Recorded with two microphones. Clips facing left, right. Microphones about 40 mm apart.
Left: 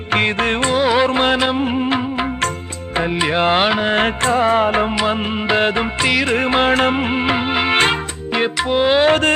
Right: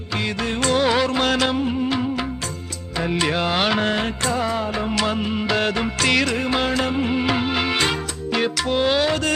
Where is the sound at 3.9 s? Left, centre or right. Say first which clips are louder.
Left 6 dB; left.